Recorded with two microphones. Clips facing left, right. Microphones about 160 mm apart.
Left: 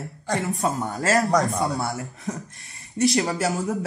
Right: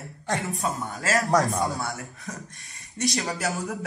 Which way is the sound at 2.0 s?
20° left (ahead or behind).